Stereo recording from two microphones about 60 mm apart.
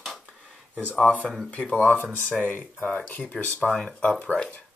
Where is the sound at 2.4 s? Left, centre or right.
Left.